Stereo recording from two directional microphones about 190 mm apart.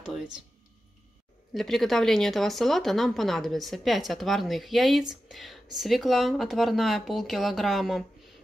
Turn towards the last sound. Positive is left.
turn(degrees=0)  # may be behind; listen again after turning